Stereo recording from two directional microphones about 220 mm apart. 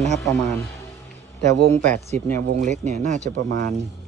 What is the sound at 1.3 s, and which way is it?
Speech, 35° right (ahead or behind).